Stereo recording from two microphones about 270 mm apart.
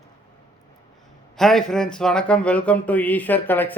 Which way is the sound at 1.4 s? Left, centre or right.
Centre.